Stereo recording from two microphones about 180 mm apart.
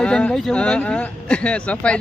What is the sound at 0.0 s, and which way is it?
Speech, 5° left (ahead or behind).